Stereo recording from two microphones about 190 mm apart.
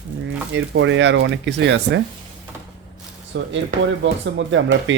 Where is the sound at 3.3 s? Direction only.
75° right (ahead or behind).